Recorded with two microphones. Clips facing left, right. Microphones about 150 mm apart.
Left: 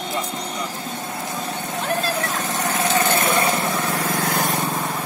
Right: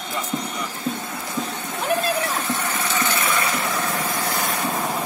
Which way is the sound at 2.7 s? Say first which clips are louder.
Left 5 dB; 45° left (ahead or behind).